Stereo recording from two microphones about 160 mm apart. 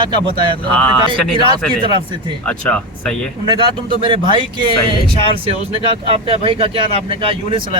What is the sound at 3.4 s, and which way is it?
A man's voice, 30° right (ahead or behind).